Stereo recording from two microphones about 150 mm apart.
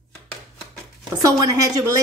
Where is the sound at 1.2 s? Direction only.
20° right (ahead or behind).